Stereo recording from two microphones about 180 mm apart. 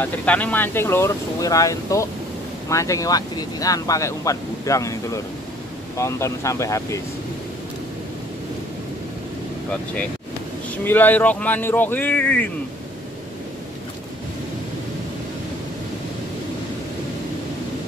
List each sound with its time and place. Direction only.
0.0 s speech: 10° left (ahead or behind)
10.8 s speech: 10° left (ahead or behind)